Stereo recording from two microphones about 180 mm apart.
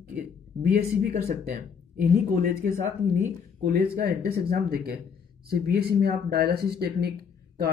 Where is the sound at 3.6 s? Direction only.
60° right (ahead or behind).